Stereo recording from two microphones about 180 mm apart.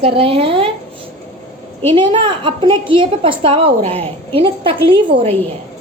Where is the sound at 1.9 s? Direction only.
25° right (ahead or behind).